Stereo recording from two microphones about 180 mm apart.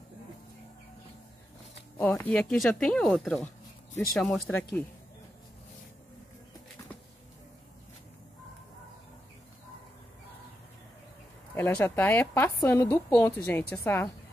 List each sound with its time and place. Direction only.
2.0 s speech: 10° left (ahead or behind)
11.5 s speech: 10° left (ahead or behind)